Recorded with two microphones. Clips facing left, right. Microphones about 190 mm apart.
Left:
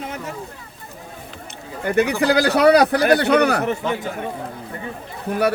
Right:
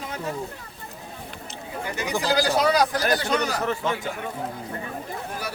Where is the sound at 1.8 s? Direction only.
60° left (ahead or behind).